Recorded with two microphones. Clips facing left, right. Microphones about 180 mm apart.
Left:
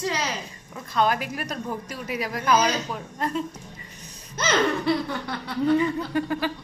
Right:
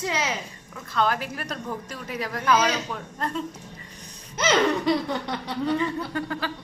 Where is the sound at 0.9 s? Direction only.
15° left (ahead or behind).